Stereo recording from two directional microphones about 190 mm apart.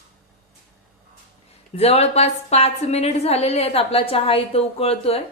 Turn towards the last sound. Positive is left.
turn(degrees=30)  # may be behind; listen again after turning